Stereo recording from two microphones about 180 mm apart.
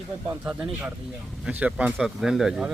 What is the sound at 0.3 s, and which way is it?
Speech, 5° right (ahead or behind).